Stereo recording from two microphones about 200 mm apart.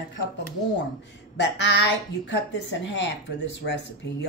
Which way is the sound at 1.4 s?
65° left (ahead or behind).